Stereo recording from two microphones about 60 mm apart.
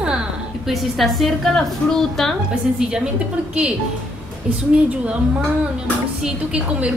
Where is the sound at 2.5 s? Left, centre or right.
Centre.